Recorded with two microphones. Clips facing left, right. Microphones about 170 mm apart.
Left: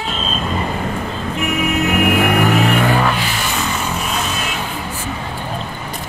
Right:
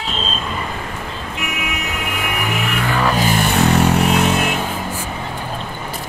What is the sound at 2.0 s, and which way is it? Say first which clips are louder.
Music: left 7 dB; 55° left (ahead or behind).